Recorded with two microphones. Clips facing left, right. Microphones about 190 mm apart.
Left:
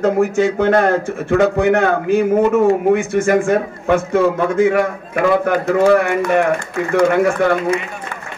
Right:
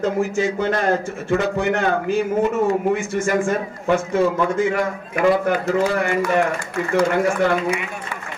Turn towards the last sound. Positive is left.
turn(degrees=55)  # may be behind; listen again after turning